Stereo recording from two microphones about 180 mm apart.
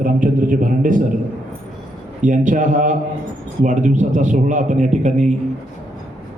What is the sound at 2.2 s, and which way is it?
A man's voice, 45° right (ahead or behind).